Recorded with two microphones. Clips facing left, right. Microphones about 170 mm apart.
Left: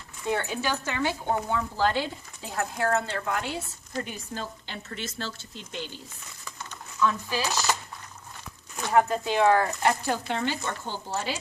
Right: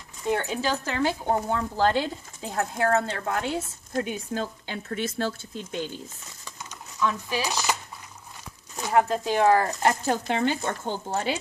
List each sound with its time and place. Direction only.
0.2 s speech: 15° right (ahead or behind)
0.6 s a woman's voice: 30° right (ahead or behind)
3.9 s speech: 50° right (ahead or behind)
6.6 s a sound: 15° right (ahead or behind)
8.8 s speech: 15° right (ahead or behind)
9.0 s a woman's voice: 35° right (ahead or behind)
10.7 s speech: 55° right (ahead or behind)